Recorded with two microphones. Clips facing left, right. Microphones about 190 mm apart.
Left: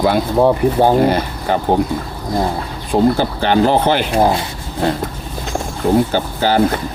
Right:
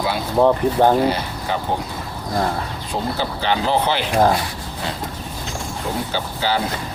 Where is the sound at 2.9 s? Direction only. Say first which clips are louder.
Left 10 dB; 50° left (ahead or behind).